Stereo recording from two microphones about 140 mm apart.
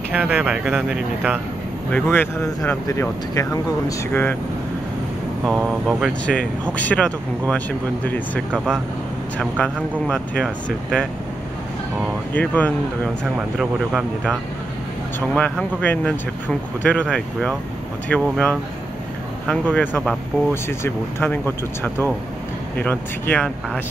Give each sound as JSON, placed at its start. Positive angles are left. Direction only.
{"t": 0.1, "sound": "speech", "side_deg": -10}
{"t": 1.9, "sound": "speech", "side_deg": 10}
{"t": 5.9, "sound": "speech", "side_deg": 0}
{"t": 6.2, "sound": "speech", "side_deg": 10}
{"t": 8.5, "sound": "speech", "side_deg": -10}
{"t": 10.0, "sound": "speech", "side_deg": 0}
{"t": 12.4, "sound": "speech", "side_deg": 10}
{"t": 13.6, "sound": "speech", "side_deg": -5}
{"t": 15.1, "sound": "speech", "side_deg": 10}